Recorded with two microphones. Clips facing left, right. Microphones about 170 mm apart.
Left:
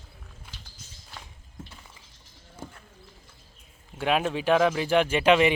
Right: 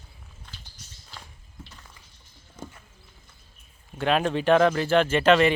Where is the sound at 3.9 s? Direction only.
10° left (ahead or behind).